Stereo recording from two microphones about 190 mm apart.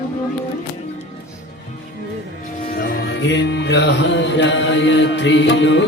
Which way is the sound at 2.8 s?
55° left (ahead or behind).